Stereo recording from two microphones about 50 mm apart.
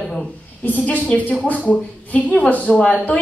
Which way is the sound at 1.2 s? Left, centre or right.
Left.